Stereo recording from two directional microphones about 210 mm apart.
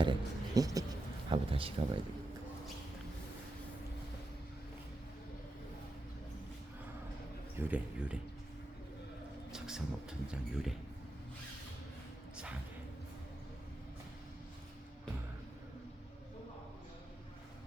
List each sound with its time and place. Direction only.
0.0 s a sound: 20° right (ahead or behind)
1.3 s speech: 25° right (ahead or behind)
7.5 s speech: 5° right (ahead or behind)
9.5 s speech: 5° right (ahead or behind)